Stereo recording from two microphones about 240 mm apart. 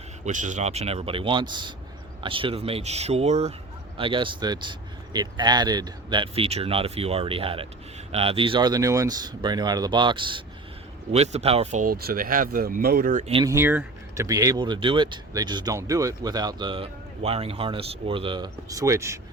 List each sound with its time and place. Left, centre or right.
0.3 s speech: right
13.4 s speech: centre